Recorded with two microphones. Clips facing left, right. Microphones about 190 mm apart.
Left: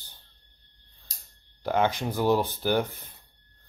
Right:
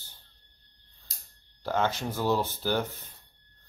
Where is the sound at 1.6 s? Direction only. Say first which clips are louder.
Left 3 dB; 15° left (ahead or behind).